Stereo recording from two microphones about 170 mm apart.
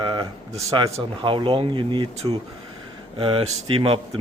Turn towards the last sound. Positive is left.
turn(degrees=-30)  # may be behind; listen again after turning